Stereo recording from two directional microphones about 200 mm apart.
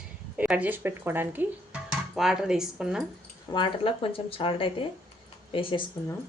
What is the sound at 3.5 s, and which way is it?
Speech, 25° left (ahead or behind).